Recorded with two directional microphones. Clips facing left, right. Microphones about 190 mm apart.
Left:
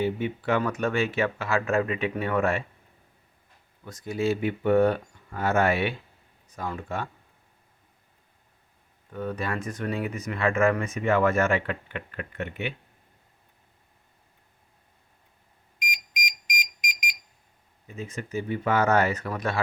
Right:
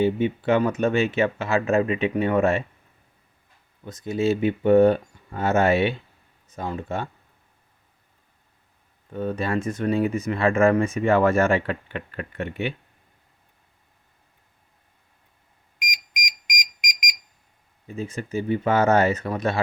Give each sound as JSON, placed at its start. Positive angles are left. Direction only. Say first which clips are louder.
{"t": 0.0, "sound": "speech", "louder": "right 5 dB", "side_deg": -25}
{"t": 3.8, "sound": "speech", "louder": "right 4 dB", "side_deg": -20}
{"t": 9.1, "sound": "speech", "louder": "right 5 dB", "side_deg": -25}
{"t": 15.9, "sound": "alarm", "louder": "even", "side_deg": -10}
{"t": 17.8, "sound": "speech", "louder": "right 5 dB", "side_deg": -30}